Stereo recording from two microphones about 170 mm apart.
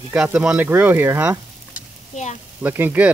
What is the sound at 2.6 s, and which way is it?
Speech, 10° right (ahead or behind).